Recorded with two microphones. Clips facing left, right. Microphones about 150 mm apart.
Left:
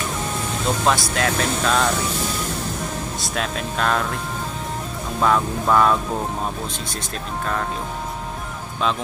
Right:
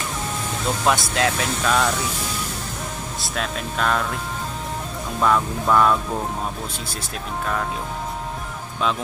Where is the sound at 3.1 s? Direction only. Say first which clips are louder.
Right 1 dB; centre (ahead or behind).